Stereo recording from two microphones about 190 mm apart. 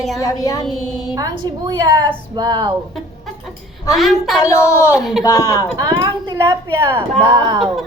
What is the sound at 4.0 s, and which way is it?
Speech, centre (ahead or behind).